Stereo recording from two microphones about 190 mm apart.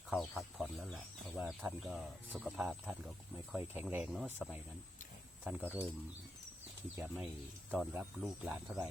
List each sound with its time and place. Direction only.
0.1 s speech: centre (ahead or behind)
6.9 s speech: 5° right (ahead or behind)